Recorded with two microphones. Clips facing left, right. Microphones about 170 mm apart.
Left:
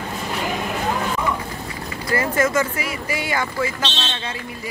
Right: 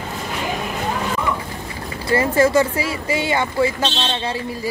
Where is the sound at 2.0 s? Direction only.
30° right (ahead or behind).